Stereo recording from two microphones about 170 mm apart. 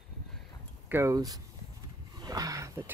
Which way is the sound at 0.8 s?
15° right (ahead or behind).